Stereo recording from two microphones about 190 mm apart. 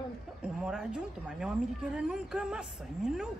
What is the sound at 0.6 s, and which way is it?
A woman's voice, 5° right (ahead or behind).